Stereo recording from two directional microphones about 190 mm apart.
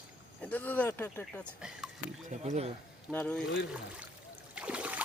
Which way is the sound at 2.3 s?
35° right (ahead or behind).